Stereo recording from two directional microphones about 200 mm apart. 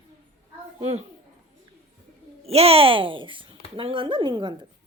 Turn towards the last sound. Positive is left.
turn(degrees=-25)  # may be behind; listen again after turning